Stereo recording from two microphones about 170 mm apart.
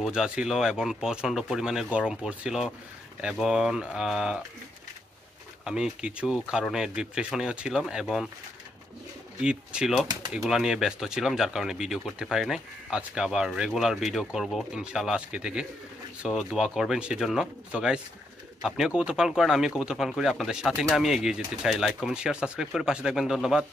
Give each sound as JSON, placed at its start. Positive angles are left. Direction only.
{"t": 0.0, "sound": "speech", "side_deg": -5}
{"t": 5.7, "sound": "speech", "side_deg": -5}
{"t": 9.4, "sound": "speech", "side_deg": -5}